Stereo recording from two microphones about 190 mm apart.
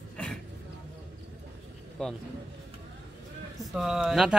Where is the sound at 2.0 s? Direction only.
Centre (ahead or behind).